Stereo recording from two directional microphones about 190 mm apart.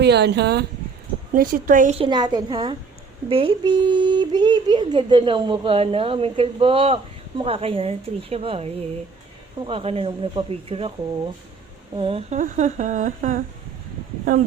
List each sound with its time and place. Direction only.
0.0 s speech: 60° right (ahead or behind)
1.3 s speech: 45° right (ahead or behind)
2.0 s speech: 25° right (ahead or behind)
11.9 s speech: 30° right (ahead or behind)
12.4 s humming: 40° right (ahead or behind)